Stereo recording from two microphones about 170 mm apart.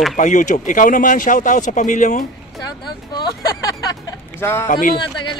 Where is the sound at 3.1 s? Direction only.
25° left (ahead or behind).